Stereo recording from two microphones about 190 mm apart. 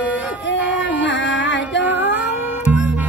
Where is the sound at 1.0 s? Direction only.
70° left (ahead or behind).